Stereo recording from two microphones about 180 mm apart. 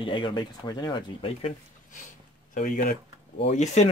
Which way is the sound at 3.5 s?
40° left (ahead or behind).